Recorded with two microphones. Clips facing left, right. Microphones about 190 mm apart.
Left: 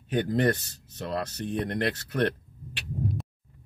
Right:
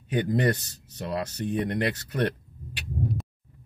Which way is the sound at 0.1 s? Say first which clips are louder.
Even; 15° right (ahead or behind).